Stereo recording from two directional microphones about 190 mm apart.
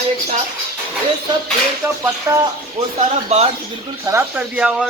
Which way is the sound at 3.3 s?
35° right (ahead or behind).